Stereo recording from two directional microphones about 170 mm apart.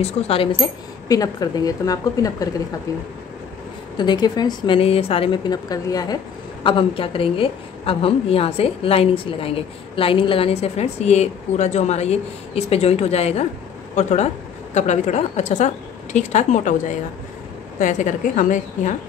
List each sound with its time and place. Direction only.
0.0 s a woman's voice: 35° left (ahead or behind); by 18.9 s 50° left (ahead or behind)